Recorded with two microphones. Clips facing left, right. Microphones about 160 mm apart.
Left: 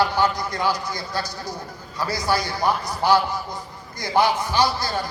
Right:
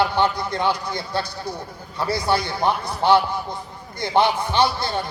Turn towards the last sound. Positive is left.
turn(degrees=-25)  # may be behind; listen again after turning